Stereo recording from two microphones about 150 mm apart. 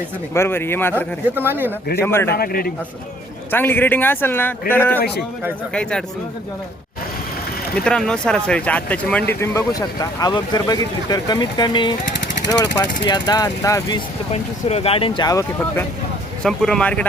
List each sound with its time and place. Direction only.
0.3 s speech: 15° left (ahead or behind)
1.4 s speech: 15° right (ahead or behind)
2.0 s speech: 15° left (ahead or behind)
2.3 s a man's voice: 85° left
3.5 s speech: 15° left (ahead or behind)
7.9 s speech: 5° left (ahead or behind)
9.4 s speech: 20° left (ahead or behind)
14.3 s speech: 40° left (ahead or behind); by 15.8 s 25° left (ahead or behind)
16.4 s speech: 5° left (ahead or behind)